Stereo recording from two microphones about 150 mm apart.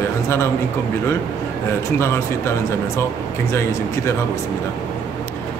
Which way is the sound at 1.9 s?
20° left (ahead or behind).